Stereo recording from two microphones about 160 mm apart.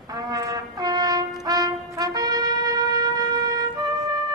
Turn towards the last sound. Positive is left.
turn(degrees=-25)  # may be behind; listen again after turning